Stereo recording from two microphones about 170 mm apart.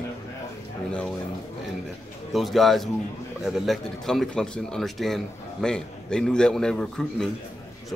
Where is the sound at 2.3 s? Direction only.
Centre (ahead or behind).